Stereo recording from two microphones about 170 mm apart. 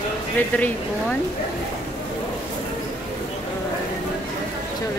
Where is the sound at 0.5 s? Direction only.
5° left (ahead or behind).